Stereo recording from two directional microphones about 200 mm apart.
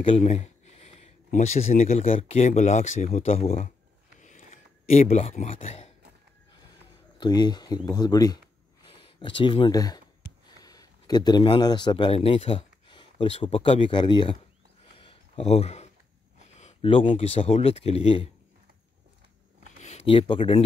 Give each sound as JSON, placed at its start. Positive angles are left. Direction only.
{"t": 0.0, "sound": "speech", "side_deg": 30}
{"t": 4.8, "sound": "speech", "side_deg": 30}
{"t": 7.2, "sound": "speech", "side_deg": 20}
{"t": 15.0, "sound": "a sound", "side_deg": 30}
{"t": 16.3, "sound": "speech", "side_deg": 35}
{"t": 19.8, "sound": "speech", "side_deg": 35}